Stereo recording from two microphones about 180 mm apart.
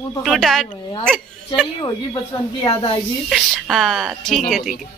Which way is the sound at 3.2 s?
Centre (ahead or behind).